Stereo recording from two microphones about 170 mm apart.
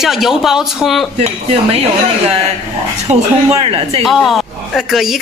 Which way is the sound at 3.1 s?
35° right (ahead or behind).